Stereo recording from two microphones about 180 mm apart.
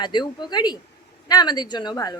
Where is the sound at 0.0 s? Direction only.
25° left (ahead or behind).